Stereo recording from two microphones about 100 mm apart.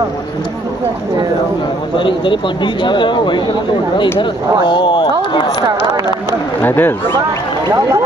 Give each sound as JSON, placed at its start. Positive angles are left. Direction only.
{"t": 2.0, "sound": "speech", "side_deg": 55}
{"t": 4.6, "sound": "speech", "side_deg": 55}
{"t": 6.6, "sound": "speech", "side_deg": 20}